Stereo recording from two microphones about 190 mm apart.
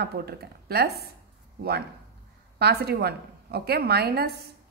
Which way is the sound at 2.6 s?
60° right (ahead or behind).